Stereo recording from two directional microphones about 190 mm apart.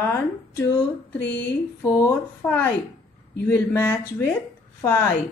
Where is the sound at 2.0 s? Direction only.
10° left (ahead or behind).